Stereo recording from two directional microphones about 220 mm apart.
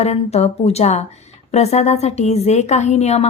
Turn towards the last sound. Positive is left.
turn(degrees=30)  # may be behind; listen again after turning